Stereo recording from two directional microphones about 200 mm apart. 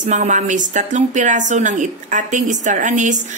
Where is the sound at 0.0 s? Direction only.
40° right (ahead or behind).